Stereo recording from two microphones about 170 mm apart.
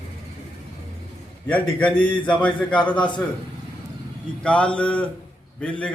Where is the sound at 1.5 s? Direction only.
10° left (ahead or behind).